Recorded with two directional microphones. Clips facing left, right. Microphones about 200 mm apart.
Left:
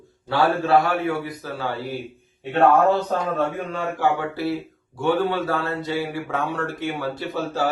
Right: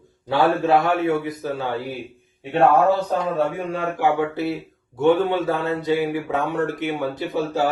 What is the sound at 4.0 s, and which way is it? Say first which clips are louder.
A man's voice: right 2 dB; 20° right (ahead or behind).